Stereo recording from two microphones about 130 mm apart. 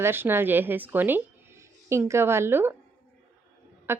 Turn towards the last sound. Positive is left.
turn(degrees=-20)  # may be behind; listen again after turning